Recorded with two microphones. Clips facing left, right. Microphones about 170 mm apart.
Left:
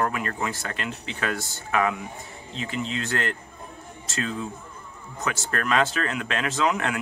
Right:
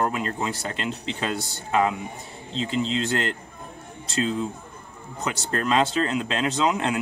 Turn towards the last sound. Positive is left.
turn(degrees=-25)  # may be behind; listen again after turning